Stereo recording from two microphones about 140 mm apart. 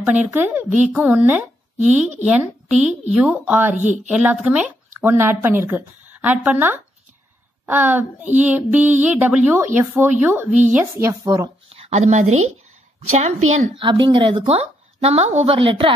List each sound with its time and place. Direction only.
0.0 s a woman's voice: 10° right (ahead or behind); by 11.5 s 25° right (ahead or behind)
11.7 s a woman's voice: 50° right (ahead or behind)
13.7 s a woman's voice: 35° right (ahead or behind)
15.0 s a woman's voice: 50° right (ahead or behind)